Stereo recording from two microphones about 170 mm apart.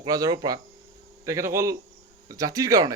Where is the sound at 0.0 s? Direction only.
20° right (ahead or behind).